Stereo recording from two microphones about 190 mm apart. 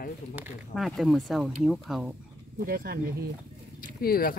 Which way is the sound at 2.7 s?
50° right (ahead or behind).